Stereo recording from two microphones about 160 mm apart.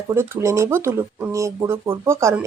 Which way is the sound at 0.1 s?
15° right (ahead or behind).